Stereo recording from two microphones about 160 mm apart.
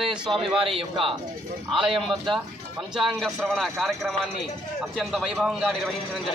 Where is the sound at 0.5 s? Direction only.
35° right (ahead or behind).